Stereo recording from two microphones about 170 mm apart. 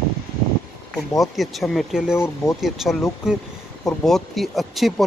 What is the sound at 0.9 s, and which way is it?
Speech, centre (ahead or behind).